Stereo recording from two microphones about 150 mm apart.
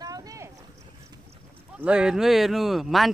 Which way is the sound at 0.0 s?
25° right (ahead or behind).